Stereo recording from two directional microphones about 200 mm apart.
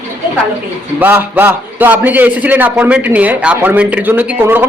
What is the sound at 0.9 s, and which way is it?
A man's voice, 10° right (ahead or behind).